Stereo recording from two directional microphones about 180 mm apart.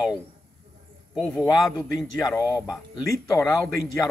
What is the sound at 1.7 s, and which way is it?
Speech, 20° left (ahead or behind).